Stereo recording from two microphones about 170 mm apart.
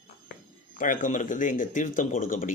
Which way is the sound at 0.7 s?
50° left (ahead or behind).